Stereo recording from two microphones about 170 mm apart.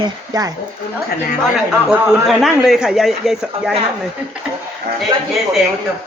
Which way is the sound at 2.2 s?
Centre (ahead or behind).